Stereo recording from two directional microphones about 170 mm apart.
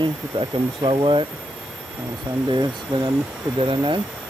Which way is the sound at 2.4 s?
25° right (ahead or behind).